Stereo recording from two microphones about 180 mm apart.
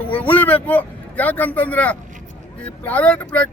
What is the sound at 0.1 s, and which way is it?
Speech, 10° left (ahead or behind).